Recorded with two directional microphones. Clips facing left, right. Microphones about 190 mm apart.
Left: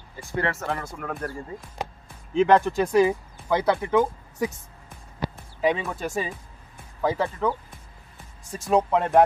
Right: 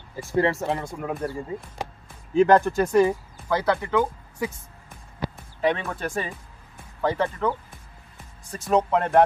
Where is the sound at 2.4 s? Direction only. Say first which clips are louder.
Right 1 dB; centre (ahead or behind).